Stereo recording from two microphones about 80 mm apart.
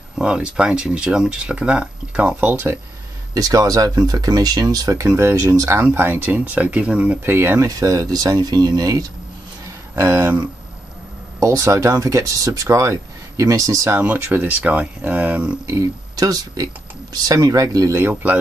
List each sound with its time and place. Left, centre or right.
0.2 s speech: centre
2.4 s speech: right
3.3 s speech: right
5.0 s speech: right; by 7.2 s centre
7.2 s speech: right
7.6 s speech: right
9.7 s a sound: right
11.3 s speech: right
13.9 s speech: right
15.6 s speech: right
18.0 s speech: right